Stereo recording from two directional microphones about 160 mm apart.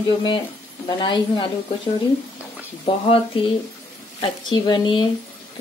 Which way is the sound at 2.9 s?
35° left (ahead or behind).